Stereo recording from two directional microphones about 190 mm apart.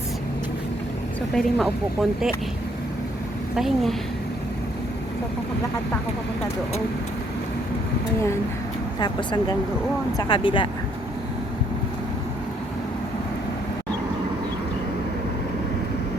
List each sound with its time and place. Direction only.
1.4 s speech: centre (ahead or behind)
3.5 s speech: centre (ahead or behind)
9.0 s speech: 20° left (ahead or behind)